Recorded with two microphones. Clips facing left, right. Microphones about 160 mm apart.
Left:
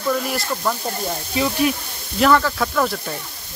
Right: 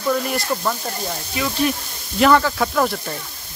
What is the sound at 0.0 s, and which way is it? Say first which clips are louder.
Speech: right 1 dB; centre (ahead or behind).